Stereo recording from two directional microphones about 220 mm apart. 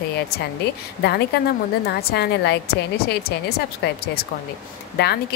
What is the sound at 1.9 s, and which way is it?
A woman's voice, 50° left (ahead or behind).